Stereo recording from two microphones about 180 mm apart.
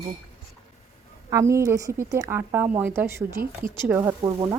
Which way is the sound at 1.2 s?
15° right (ahead or behind).